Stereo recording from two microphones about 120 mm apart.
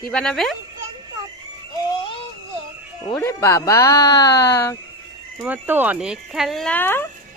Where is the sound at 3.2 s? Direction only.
25° left (ahead or behind).